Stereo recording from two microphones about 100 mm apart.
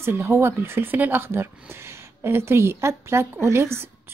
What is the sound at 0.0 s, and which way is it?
Speech, 25° right (ahead or behind).